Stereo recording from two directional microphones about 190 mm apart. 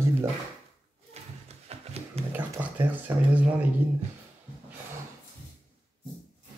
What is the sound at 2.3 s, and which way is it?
Speech, 10° right (ahead or behind).